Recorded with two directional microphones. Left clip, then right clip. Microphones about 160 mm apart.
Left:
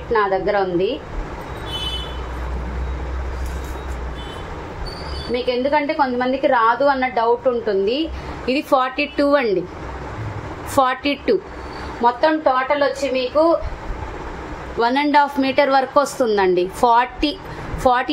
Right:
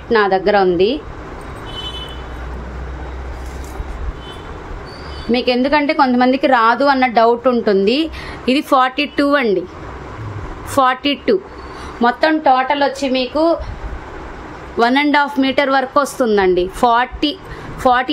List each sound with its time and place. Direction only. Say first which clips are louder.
0.1 s a woman's voice: right 5 dB; 75° right (ahead or behind)
5.3 s a woman's voice: right 4 dB; 90° right; by 8.5 s 60° right (ahead or behind)
8.5 s a woman's voice: right 4 dB; 40° right (ahead or behind)
10.7 s a woman's voice: right 3 dB; 25° right (ahead or behind)
12.0 s a woman's voice: right 2 dB; 50° right (ahead or behind)
14.8 s a woman's voice: right 2 dB; 40° right (ahead or behind)